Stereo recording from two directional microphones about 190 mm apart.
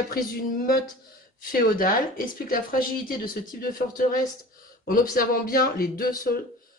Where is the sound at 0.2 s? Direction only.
55° left (ahead or behind).